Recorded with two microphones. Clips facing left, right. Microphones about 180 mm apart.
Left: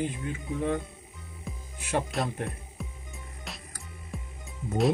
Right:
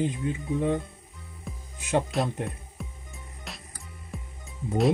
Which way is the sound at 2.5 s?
Centre (ahead or behind).